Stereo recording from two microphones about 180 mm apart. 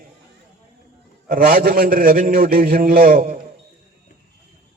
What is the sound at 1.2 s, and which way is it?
A man's voice, 50° right (ahead or behind).